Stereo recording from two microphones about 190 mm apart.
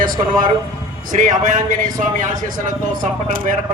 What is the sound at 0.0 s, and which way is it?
A man's voice, 45° right (ahead or behind).